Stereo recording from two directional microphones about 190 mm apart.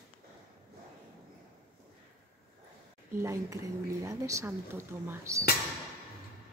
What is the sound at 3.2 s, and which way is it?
Speech, 15° right (ahead or behind).